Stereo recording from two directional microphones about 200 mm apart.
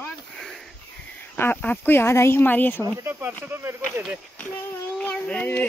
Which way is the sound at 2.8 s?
15° right (ahead or behind).